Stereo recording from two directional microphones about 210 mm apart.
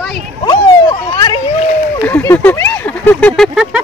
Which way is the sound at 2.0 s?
10° left (ahead or behind).